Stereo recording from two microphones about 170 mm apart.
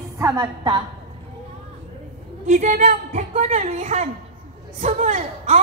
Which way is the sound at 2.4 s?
45° right (ahead or behind).